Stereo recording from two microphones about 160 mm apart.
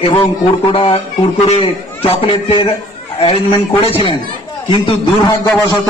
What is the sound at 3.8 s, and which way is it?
A man's voice, 35° left (ahead or behind).